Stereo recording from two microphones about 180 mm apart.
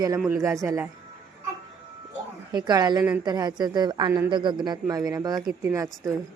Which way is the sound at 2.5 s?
25° right (ahead or behind).